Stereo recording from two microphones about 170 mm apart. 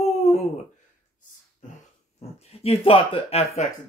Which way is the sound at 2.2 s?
35° left (ahead or behind).